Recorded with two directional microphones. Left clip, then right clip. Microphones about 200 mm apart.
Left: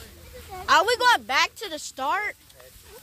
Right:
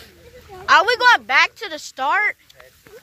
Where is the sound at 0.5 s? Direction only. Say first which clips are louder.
Right 5 dB; 25° left (ahead or behind).